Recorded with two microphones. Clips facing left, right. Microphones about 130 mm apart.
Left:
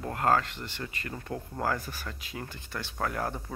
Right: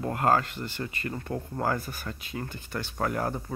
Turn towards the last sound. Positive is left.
turn(degrees=-5)  # may be behind; listen again after turning